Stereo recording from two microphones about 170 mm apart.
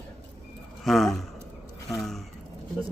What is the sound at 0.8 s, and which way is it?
A man's voice, centre (ahead or behind).